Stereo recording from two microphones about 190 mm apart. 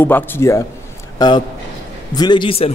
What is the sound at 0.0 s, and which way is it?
A man's voice, 10° left (ahead or behind).